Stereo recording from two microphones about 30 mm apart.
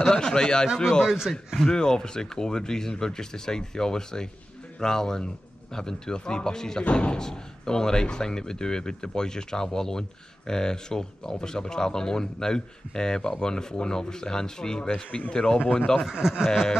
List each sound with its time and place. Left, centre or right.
0.1 s speech: left
1.0 s speech: centre
1.7 s speech: left
6.9 s speech: left
7.2 s speech: left
16.1 s speech: centre